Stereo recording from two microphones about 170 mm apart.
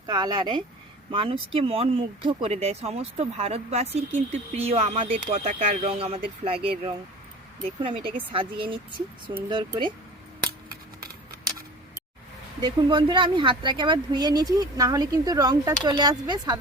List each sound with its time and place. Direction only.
0.0 s speech: 25° right (ahead or behind)
12.6 s speech: 30° right (ahead or behind)